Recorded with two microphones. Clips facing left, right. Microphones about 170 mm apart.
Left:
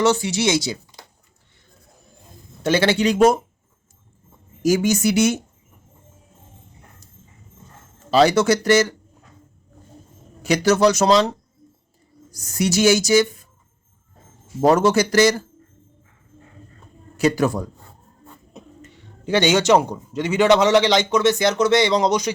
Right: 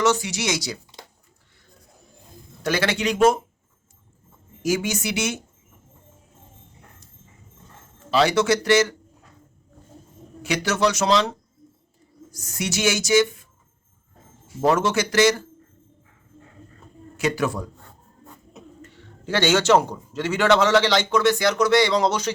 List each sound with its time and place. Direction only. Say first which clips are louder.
0.0 s speech: left 4 dB; 30° left (ahead or behind)
2.6 s speech: left 5 dB; 25° left (ahead or behind)
4.6 s speech: left 6 dB; 40° left (ahead or behind)
8.1 s speech: left 4 dB; 40° left (ahead or behind)
10.4 s speech: left 6 dB; 40° left (ahead or behind)
12.3 s speech: left 7 dB; 35° left (ahead or behind)
14.6 s speech: left 5 dB; 40° left (ahead or behind)
17.2 s speech: left 5 dB; 35° left (ahead or behind)
18.8 s a man's voice: even; 15° left (ahead or behind)